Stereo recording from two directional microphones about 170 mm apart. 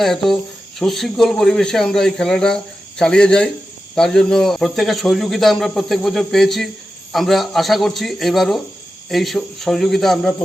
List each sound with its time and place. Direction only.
0.0 s speech: centre (ahead or behind)